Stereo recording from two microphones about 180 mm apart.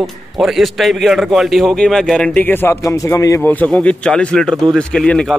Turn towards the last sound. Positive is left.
turn(degrees=5)  # may be behind; listen again after turning